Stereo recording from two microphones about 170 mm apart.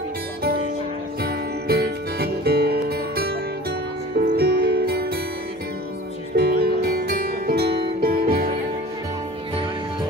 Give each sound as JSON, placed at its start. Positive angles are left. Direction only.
{"t": 1.2, "sound": "music", "side_deg": -65}
{"t": 4.4, "sound": "music", "side_deg": -65}
{"t": 6.3, "sound": "music", "side_deg": -65}